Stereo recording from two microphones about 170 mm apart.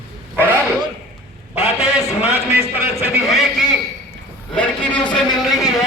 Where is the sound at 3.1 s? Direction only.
Centre (ahead or behind).